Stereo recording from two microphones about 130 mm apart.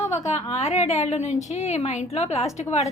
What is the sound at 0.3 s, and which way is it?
A woman's voice, 60° left (ahead or behind).